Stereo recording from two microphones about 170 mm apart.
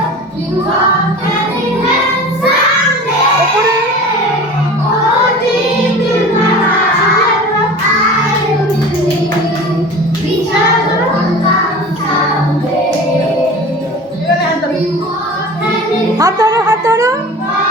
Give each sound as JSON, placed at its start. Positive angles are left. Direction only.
{"t": 16.1, "sound": "music", "side_deg": -20}